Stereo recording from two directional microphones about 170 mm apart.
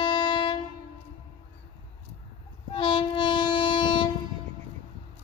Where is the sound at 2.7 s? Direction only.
30° left (ahead or behind).